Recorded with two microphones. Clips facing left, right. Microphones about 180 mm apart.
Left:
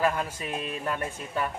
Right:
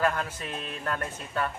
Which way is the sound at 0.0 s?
10° left (ahead or behind).